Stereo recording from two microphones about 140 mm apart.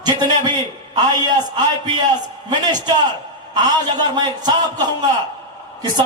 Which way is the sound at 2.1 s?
30° right (ahead or behind).